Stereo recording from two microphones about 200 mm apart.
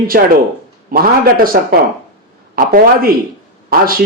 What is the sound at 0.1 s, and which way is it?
A man's voice, 45° right (ahead or behind).